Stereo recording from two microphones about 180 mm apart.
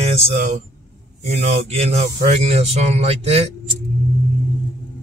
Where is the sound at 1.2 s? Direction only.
40° right (ahead or behind).